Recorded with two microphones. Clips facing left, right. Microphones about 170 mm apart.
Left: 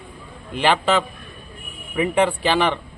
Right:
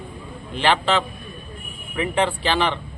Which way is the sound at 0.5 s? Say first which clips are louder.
Left 1 dB; 10° left (ahead or behind).